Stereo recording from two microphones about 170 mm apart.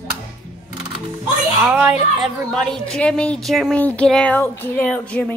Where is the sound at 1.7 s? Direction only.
5° right (ahead or behind); by 5.3 s 10° left (ahead or behind).